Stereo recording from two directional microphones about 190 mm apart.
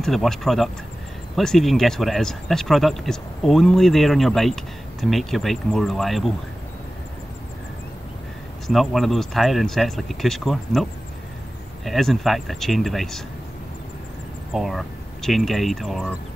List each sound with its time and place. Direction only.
0.0 s speech: centre (ahead or behind)
8.6 s speech: centre (ahead or behind)
14.5 s speech: centre (ahead or behind)